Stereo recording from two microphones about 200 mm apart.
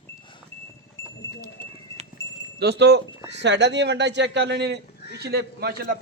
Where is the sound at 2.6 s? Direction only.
55° right (ahead or behind).